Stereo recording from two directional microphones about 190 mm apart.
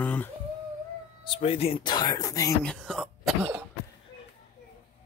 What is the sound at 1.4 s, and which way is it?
Speech, 30° left (ahead or behind).